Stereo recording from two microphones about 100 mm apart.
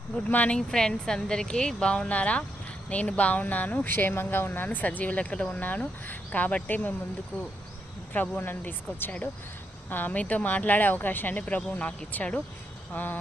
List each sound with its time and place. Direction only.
0.3 s speech: 15° left (ahead or behind)